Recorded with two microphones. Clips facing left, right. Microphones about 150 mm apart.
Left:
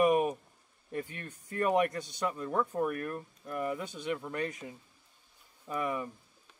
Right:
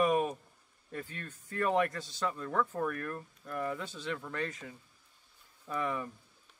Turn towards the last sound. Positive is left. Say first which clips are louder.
# left 1 dB
turn(degrees=15)  # may be behind; listen again after turning